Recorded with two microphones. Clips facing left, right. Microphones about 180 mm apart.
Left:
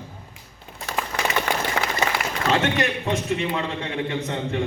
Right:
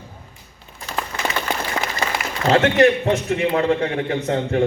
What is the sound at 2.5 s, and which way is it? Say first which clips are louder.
A man's voice: right 8 dB; 65° right (ahead or behind).